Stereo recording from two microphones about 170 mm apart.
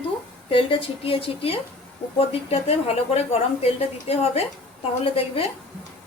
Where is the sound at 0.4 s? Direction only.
30° left (ahead or behind).